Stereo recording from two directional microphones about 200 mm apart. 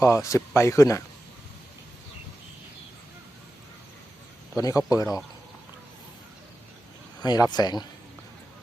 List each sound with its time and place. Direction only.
0.0 s speech: 15° left (ahead or behind)
4.5 s speech: 15° left (ahead or behind)
7.2 s speech: 20° left (ahead or behind)